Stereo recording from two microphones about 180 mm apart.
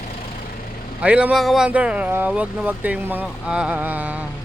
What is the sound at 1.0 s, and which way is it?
Speech, 5° right (ahead or behind).